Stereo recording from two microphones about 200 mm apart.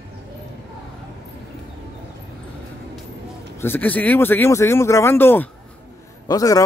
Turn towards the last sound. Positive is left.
turn(degrees=15)  # may be behind; listen again after turning